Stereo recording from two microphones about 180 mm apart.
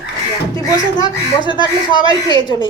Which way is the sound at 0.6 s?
20° left (ahead or behind).